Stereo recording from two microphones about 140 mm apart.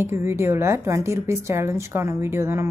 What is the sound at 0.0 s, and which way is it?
A woman's voice, 20° right (ahead or behind).